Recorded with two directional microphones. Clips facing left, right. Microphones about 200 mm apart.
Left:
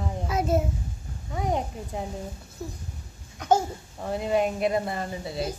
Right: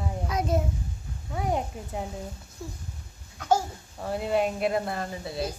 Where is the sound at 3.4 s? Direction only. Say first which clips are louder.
Left 2 dB; 20° left (ahead or behind).